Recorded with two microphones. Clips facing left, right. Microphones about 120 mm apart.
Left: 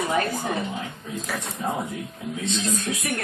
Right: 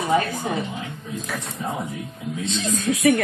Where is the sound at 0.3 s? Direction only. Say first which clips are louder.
Right 1 dB; 5° left (ahead or behind).